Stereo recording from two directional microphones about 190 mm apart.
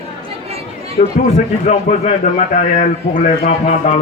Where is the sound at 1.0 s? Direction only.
40° left (ahead or behind).